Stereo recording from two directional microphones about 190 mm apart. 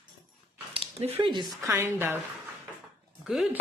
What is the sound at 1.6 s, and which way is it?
Speech, 15° right (ahead or behind).